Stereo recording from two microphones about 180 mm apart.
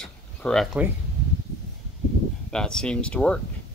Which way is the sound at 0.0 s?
5° left (ahead or behind).